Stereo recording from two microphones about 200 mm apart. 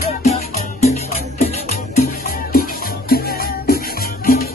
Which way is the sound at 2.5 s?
50° left (ahead or behind).